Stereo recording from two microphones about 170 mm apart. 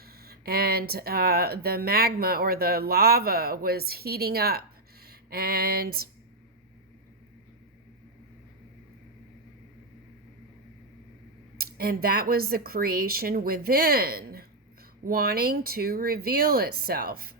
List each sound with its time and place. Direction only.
0.0 s speech: 65° right (ahead or behind)
11.5 s speech: 65° right (ahead or behind)